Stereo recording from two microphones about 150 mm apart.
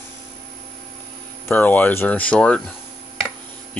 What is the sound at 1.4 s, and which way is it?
Speech, 10° left (ahead or behind).